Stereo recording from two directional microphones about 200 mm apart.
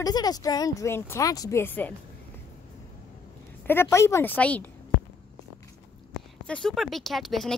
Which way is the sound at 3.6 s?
10° left (ahead or behind).